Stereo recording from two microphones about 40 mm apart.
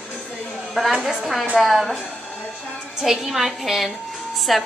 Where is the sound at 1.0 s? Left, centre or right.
Centre.